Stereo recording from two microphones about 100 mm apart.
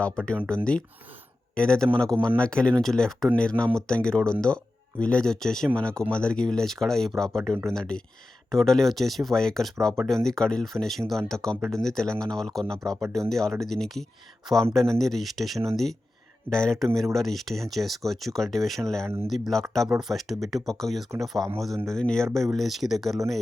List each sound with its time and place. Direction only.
0.0 s speech: 10° left (ahead or behind)
19.0 s speech: 25° right (ahead or behind)
19.3 s speech: centre (ahead or behind)
21.4 s a man's voice: 35° right (ahead or behind)
21.8 s speech: 5° left (ahead or behind)